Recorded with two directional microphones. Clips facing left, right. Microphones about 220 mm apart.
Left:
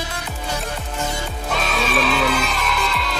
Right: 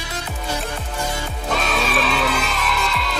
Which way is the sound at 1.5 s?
Centre (ahead or behind).